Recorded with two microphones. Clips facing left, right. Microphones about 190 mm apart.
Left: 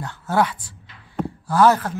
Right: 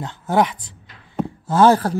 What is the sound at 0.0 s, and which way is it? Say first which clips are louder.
Speech: right 2 dB; 20° right (ahead or behind).